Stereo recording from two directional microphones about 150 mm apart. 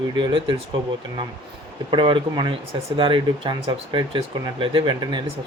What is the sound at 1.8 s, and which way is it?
Speech, 35° right (ahead or behind).